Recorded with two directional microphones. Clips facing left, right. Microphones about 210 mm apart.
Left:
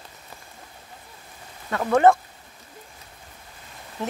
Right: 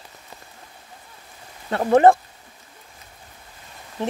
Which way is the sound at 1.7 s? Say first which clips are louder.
Right 3 dB; 30° right (ahead or behind).